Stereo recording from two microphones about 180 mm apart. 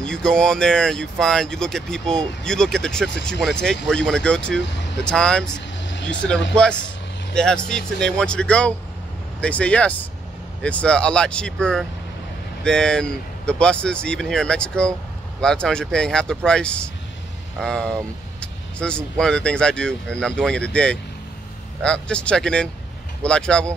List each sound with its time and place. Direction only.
0.0 s speech: 5° left (ahead or behind)
5.9 s vehicle: 80° left
6.5 s speech: 5° left (ahead or behind)